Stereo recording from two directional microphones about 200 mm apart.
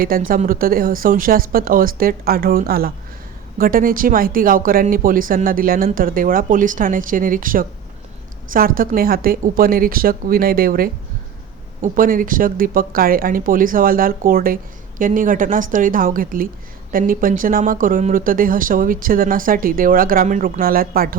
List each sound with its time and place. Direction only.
0.0 s speech: 45° right (ahead or behind)